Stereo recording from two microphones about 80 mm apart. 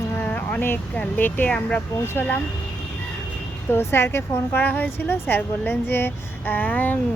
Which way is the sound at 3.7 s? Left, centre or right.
Left.